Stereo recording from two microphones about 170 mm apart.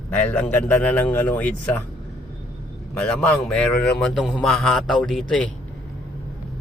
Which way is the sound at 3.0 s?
5° left (ahead or behind).